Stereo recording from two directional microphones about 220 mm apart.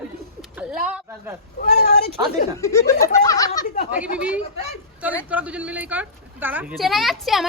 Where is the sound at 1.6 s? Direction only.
45° left (ahead or behind).